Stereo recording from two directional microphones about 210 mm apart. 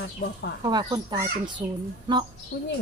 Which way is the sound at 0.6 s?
20° right (ahead or behind).